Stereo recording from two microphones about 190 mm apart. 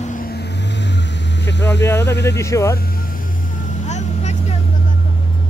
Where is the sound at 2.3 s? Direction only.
15° left (ahead or behind).